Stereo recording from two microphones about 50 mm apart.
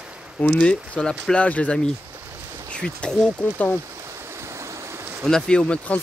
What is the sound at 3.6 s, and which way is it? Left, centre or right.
Speech, left.